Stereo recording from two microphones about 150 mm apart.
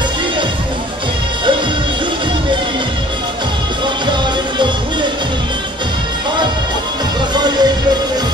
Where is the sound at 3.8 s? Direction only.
30° right (ahead or behind).